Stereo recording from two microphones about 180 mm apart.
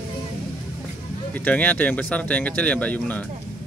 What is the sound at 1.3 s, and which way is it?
Speech, 10° left (ahead or behind).